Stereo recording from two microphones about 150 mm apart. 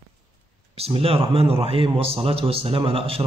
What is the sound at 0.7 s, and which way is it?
A man's voice, 40° right (ahead or behind).